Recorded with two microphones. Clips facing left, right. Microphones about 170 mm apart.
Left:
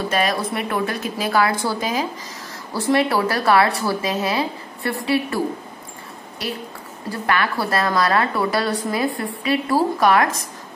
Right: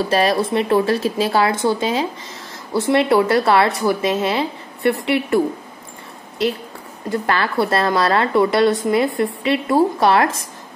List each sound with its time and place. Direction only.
0.1 s speech: 30° right (ahead or behind)
7.1 s speech: 25° right (ahead or behind)